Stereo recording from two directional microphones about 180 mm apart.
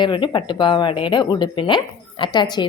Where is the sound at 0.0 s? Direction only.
25° left (ahead or behind).